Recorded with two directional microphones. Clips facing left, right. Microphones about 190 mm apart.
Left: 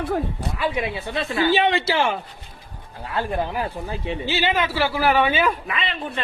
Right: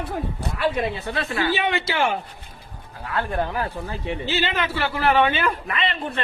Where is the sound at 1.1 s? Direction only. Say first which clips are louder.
Left 6 dB; 25° left (ahead or behind).